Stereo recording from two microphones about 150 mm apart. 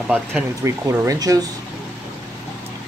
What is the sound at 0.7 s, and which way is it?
Speech, 20° right (ahead or behind).